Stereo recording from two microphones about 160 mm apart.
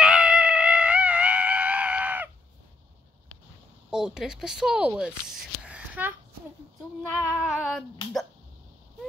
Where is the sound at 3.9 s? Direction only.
5° right (ahead or behind).